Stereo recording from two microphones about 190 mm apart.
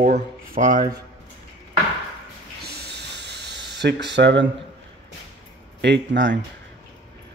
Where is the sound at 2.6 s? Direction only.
60° right (ahead or behind).